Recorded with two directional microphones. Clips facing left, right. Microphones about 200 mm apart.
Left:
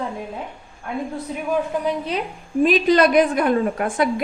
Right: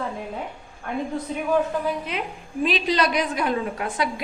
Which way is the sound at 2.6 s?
50° left (ahead or behind).